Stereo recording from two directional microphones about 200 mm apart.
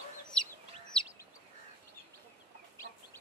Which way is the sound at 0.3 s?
5° left (ahead or behind).